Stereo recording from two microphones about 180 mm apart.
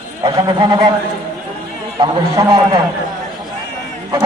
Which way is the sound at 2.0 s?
25° right (ahead or behind).